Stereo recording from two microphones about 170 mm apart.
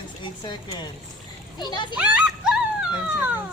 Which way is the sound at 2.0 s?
5° right (ahead or behind).